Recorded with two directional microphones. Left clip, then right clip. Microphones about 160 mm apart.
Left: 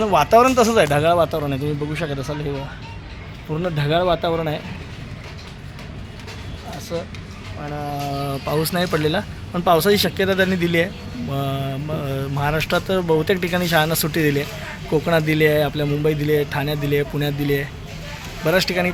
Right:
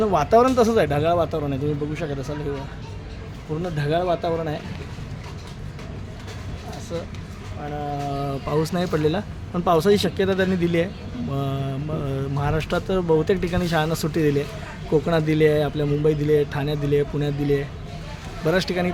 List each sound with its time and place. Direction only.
0.0 s speech: 5° right (ahead or behind)
0.9 s speech: 25° left (ahead or behind)
1.9 s speech: 40° left (ahead or behind)
3.6 s speech: 50° left (ahead or behind)
6.9 s speech: 65° left (ahead or behind)
8.1 s speech: 10° left (ahead or behind)